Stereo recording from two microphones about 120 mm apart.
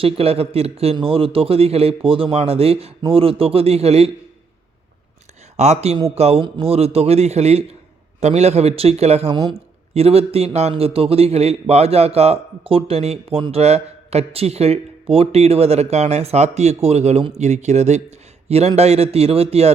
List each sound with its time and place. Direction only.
0.0 s a man's voice: 55° right (ahead or behind)
5.5 s speech: 65° right (ahead or behind)
18.4 s a man's voice: 60° right (ahead or behind)